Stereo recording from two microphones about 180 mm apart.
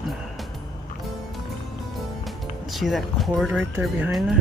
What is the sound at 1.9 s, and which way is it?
Speech, centre (ahead or behind).